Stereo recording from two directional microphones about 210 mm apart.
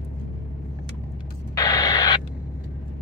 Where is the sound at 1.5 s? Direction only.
15° left (ahead or behind).